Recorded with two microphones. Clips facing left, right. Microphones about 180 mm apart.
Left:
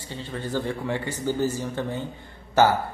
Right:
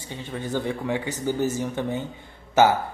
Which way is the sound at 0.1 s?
15° right (ahead or behind).